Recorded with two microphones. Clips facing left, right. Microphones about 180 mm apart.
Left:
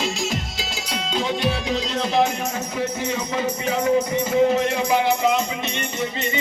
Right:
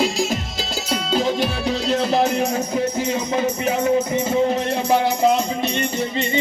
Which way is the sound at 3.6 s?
25° right (ahead or behind).